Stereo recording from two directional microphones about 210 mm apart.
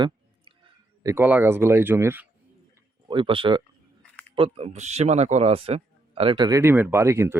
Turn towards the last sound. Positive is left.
turn(degrees=-10)  # may be behind; listen again after turning